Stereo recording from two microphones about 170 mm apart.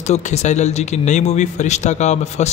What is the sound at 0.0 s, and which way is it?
Speech, 40° left (ahead or behind).